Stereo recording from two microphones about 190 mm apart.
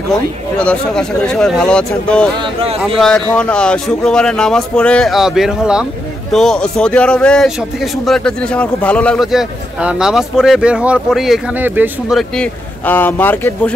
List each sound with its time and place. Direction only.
0.1 s a man's voice: 5° left (ahead or behind)
2.3 s speech: 30° right (ahead or behind)
3.0 s a man's voice: 5° left (ahead or behind)